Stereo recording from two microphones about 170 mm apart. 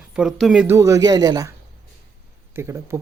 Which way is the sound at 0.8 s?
20° right (ahead or behind).